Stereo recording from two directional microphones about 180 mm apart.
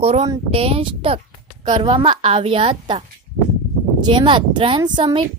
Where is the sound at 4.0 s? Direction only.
25° right (ahead or behind).